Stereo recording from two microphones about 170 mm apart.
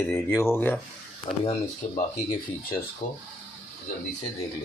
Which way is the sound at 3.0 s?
40° left (ahead or behind).